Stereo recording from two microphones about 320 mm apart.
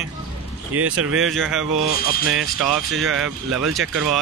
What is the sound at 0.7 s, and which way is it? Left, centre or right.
Speech, right.